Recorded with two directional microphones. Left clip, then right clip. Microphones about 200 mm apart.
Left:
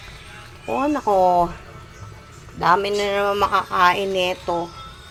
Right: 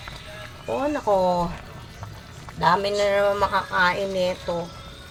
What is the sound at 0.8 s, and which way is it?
Speech, 5° left (ahead or behind).